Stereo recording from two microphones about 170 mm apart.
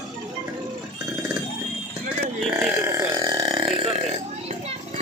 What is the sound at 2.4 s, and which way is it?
Burping, 5° right (ahead or behind).